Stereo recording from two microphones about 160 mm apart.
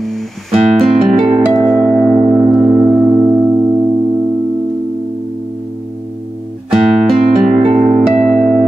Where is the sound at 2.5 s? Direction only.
10° right (ahead or behind).